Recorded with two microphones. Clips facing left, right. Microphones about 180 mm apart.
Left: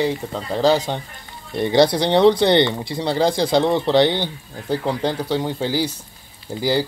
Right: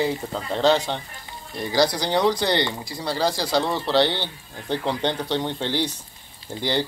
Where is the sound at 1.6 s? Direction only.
25° left (ahead or behind).